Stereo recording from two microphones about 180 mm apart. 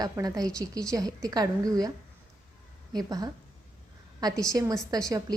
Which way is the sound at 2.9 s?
20° right (ahead or behind).